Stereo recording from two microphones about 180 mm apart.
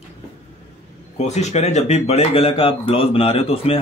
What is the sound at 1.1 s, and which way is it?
Speech, 40° left (ahead or behind).